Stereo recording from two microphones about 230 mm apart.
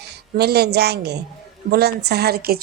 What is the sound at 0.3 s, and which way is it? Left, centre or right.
A woman's voice, right.